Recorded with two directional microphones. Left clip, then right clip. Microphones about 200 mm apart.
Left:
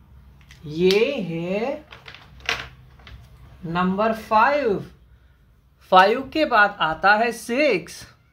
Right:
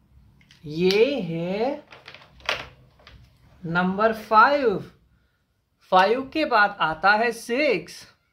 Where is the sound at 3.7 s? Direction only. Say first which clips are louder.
Even; 30° right (ahead or behind).